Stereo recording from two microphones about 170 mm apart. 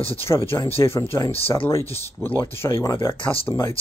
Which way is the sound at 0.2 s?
15° left (ahead or behind).